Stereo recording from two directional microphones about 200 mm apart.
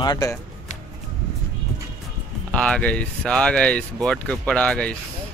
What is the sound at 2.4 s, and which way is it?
Speech, 5° left (ahead or behind).